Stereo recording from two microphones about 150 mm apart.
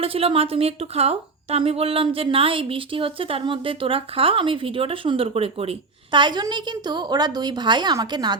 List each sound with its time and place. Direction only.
0.0 s a woman's voice: 40° right (ahead or behind)